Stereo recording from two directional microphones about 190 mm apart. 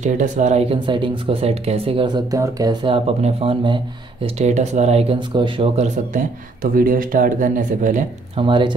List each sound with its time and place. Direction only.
0.0 s speech: 40° right (ahead or behind)
8.4 s speech: 25° right (ahead or behind)